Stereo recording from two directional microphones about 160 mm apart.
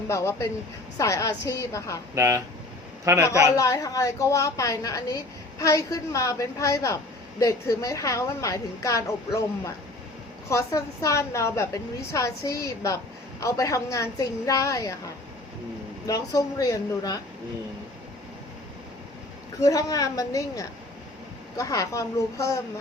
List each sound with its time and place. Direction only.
0.1 s a woman's voice: 20° left (ahead or behind)
2.1 s a man's voice: 20° right (ahead or behind)
3.5 s a woman's voice: 20° left (ahead or behind)
19.6 s a woman's voice: 20° left (ahead or behind)